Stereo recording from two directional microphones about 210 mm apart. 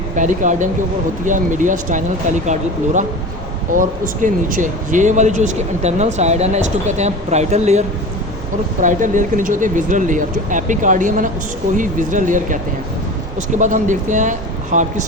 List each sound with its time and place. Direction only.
0.2 s speech: 35° right (ahead or behind)
13.6 s speech: 35° right (ahead or behind)